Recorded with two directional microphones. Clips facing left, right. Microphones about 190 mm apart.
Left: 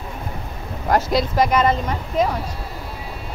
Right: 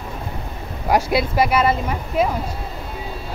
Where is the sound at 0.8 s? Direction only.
10° right (ahead or behind).